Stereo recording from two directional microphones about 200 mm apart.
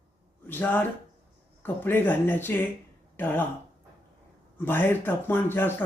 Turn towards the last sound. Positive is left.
turn(degrees=10)  # may be behind; listen again after turning